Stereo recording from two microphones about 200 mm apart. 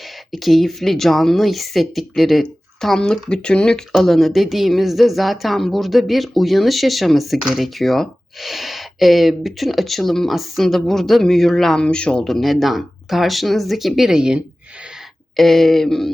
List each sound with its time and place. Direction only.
0.3 s speech: centre (ahead or behind)